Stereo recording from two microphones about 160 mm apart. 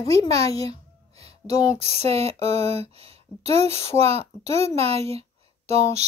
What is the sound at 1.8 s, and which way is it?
Speech, 40° right (ahead or behind).